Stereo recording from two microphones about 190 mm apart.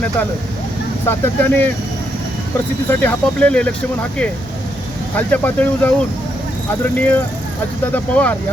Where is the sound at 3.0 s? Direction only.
10° left (ahead or behind).